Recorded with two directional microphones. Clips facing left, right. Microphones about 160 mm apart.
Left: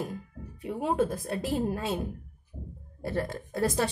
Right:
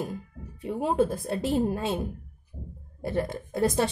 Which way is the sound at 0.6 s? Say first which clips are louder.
Right 3 dB; 30° right (ahead or behind).